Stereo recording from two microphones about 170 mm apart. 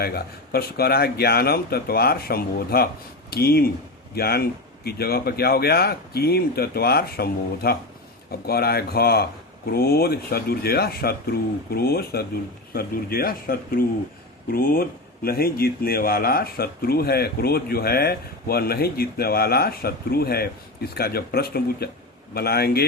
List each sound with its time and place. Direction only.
0.5 s speech: 65° left (ahead or behind)